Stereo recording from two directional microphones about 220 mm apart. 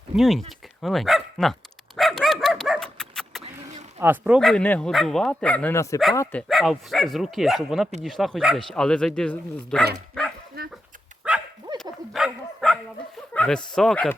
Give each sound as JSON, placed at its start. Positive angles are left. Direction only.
{"t": 0.2, "sound": "speech", "side_deg": 0}
{"t": 2.0, "sound": "dog", "side_deg": 0}
{"t": 4.0, "sound": "speech", "side_deg": -5}
{"t": 10.6, "sound": "dog", "side_deg": -45}
{"t": 11.2, "sound": "dog", "side_deg": -5}
{"t": 13.3, "sound": "a sound", "side_deg": 5}
{"t": 13.7, "sound": "speech", "side_deg": 0}